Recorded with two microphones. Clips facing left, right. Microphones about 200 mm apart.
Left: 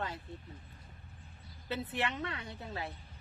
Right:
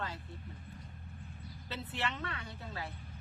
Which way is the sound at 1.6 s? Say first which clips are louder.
Left 4 dB; 20° left (ahead or behind).